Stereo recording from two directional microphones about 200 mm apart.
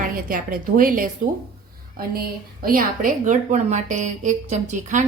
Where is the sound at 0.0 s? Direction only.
45° right (ahead or behind).